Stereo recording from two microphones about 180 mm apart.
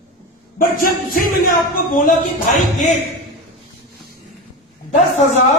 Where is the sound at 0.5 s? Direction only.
50° left (ahead or behind).